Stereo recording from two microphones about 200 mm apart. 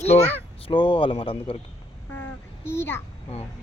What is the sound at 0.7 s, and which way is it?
Speech, 25° left (ahead or behind).